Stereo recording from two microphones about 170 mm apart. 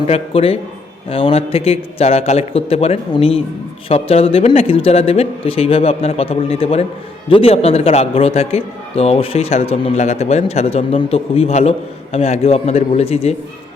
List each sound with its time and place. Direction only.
0.1 s a man's voice: 35° left (ahead or behind)